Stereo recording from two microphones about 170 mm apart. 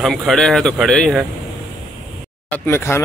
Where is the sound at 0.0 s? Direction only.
Centre (ahead or behind).